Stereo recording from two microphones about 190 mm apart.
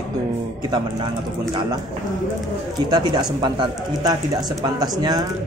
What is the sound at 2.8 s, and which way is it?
Speech, 20° right (ahead or behind).